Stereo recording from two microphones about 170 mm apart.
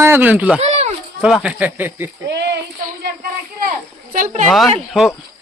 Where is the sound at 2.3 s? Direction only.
90° right.